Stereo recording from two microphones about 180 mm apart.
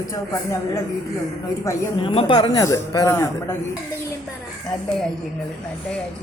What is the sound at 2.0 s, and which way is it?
Speech, 25° left (ahead or behind).